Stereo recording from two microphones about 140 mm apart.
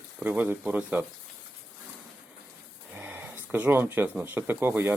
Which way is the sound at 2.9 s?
15° right (ahead or behind).